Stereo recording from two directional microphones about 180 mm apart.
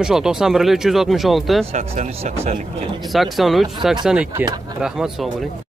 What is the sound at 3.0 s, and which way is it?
Speech, centre (ahead or behind).